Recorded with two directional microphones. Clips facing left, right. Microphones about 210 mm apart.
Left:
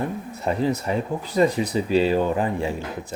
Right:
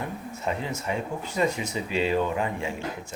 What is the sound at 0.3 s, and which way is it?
Speech, 35° left (ahead or behind).